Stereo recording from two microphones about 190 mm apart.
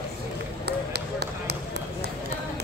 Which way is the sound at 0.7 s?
60° right (ahead or behind).